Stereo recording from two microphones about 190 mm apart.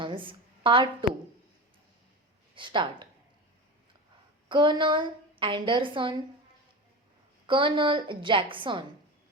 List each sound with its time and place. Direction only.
0.0 s a sound: 25° right (ahead or behind)
2.6 s a woman's voice: 25° right (ahead or behind)
4.4 s a woman's voice: 25° right (ahead or behind)
7.4 s a woman's voice: 25° right (ahead or behind)